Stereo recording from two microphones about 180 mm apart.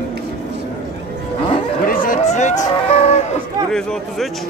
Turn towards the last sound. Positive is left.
turn(degrees=40)  # may be behind; listen again after turning